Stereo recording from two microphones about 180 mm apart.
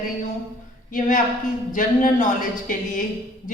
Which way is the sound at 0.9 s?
45° left (ahead or behind).